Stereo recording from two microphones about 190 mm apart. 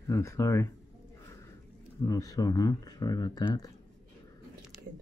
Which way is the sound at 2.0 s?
20° left (ahead or behind).